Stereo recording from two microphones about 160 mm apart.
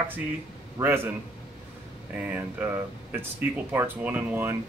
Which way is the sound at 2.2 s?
10° right (ahead or behind).